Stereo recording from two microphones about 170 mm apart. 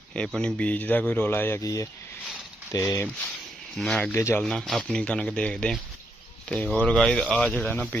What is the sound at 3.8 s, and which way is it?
Speech, centre (ahead or behind).